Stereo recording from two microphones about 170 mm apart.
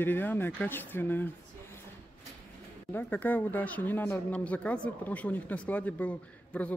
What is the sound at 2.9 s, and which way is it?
A man's voice, 10° left (ahead or behind).